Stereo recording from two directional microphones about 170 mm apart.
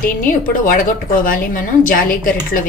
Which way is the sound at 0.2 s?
50° left (ahead or behind).